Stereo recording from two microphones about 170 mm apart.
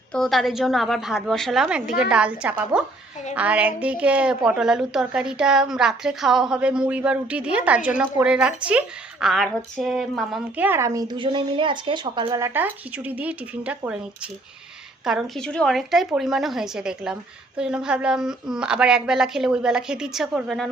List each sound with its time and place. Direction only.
0.1 s a woman's voice: centre (ahead or behind); by 12.5 s 25° right (ahead or behind)
12.5 s speech: 10° right (ahead or behind)
15.0 s a woman's voice: centre (ahead or behind)